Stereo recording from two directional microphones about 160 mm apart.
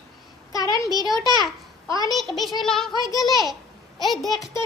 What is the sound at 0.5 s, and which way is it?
Speech, 25° left (ahead or behind).